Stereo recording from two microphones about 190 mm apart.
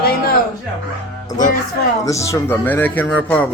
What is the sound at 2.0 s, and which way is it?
Speech, 15° left (ahead or behind).